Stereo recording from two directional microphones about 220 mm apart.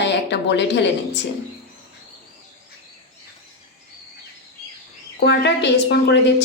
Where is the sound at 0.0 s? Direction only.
50° left (ahead or behind).